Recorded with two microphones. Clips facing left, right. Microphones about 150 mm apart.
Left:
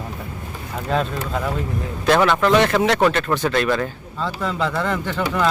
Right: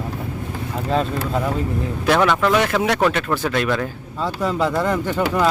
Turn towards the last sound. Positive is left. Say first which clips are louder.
# right 2 dB
turn(degrees=-10)  # may be behind; listen again after turning